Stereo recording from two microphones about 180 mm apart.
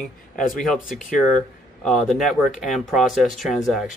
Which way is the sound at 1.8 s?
Centre (ahead or behind).